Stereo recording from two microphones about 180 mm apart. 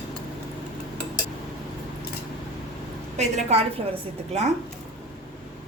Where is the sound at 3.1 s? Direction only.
35° right (ahead or behind).